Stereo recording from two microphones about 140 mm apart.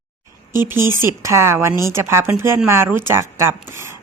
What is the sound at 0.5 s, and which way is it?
Speech, 15° right (ahead or behind).